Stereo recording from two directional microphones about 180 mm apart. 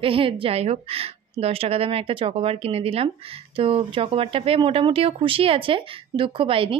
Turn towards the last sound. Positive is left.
turn(degrees=-30)  # may be behind; listen again after turning